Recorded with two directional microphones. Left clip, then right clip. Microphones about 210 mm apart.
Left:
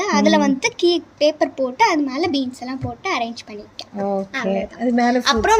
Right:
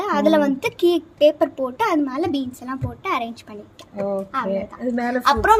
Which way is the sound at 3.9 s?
10° left (ahead or behind).